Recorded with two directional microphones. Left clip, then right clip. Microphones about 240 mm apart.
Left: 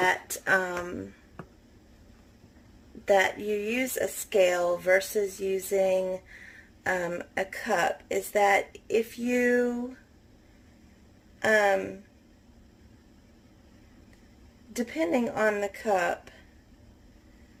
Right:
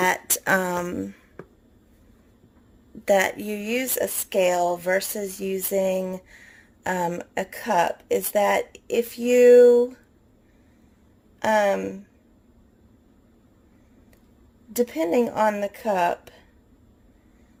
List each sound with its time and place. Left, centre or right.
0.0 s speech: right
3.0 s speech: right
11.3 s speech: right
14.8 s speech: right